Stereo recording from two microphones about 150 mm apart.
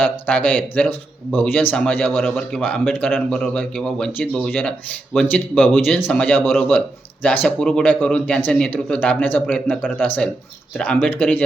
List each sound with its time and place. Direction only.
0.0 s speech: 10° left (ahead or behind)